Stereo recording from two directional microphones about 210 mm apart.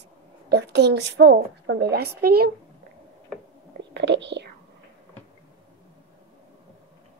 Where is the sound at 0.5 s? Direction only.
55° right (ahead or behind).